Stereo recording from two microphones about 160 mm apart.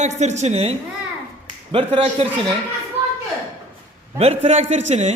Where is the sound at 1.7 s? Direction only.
35° right (ahead or behind).